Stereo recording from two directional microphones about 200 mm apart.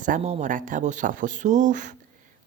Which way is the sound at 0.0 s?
35° right (ahead or behind).